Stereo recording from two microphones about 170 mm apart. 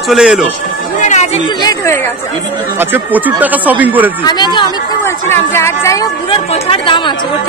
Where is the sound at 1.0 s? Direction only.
40° left (ahead or behind).